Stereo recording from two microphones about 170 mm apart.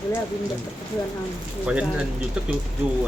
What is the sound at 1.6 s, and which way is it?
Speech, 5° right (ahead or behind).